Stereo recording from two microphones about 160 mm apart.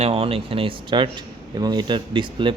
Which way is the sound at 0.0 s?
35° right (ahead or behind).